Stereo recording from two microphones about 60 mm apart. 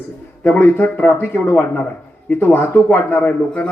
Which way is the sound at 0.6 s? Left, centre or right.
Left.